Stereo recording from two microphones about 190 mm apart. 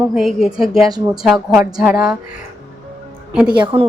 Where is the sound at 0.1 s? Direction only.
Centre (ahead or behind).